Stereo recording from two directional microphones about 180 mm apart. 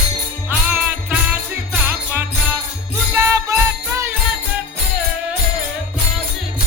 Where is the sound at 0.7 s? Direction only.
10° right (ahead or behind).